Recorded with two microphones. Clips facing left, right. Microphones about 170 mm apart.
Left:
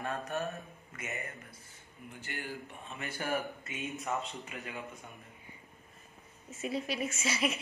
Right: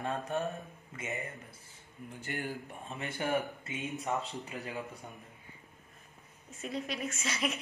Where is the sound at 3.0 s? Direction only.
20° right (ahead or behind).